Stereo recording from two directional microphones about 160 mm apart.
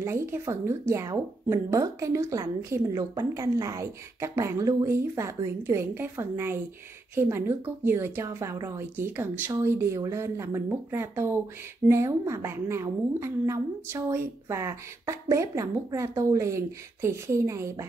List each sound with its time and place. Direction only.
0.0 s a woman's voice: 15° right (ahead or behind)